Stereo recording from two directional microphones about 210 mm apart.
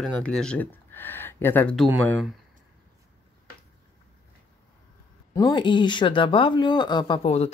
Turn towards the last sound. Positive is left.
turn(degrees=30)  # may be behind; listen again after turning